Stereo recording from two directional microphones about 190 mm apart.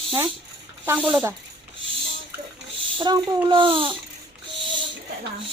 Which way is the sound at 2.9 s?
25° right (ahead or behind).